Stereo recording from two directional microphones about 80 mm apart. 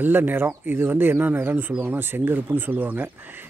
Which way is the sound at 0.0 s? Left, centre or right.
Right.